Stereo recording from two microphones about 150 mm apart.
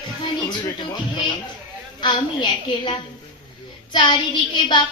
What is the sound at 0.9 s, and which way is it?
A woman's voice, 30° left (ahead or behind).